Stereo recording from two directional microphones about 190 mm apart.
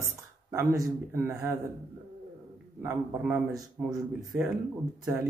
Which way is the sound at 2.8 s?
10° right (ahead or behind).